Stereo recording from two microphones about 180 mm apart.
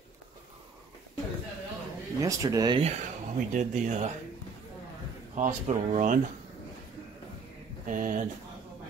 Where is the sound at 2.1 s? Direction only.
20° right (ahead or behind).